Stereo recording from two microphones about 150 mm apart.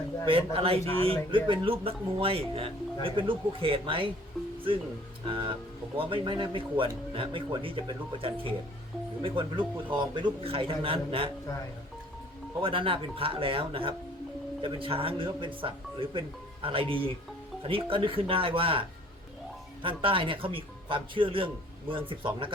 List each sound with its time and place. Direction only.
0.3 s a man's voice: 40° right (ahead or behind)
5.2 s a man's voice: 35° right (ahead or behind)
12.6 s a man's voice: 35° right (ahead or behind)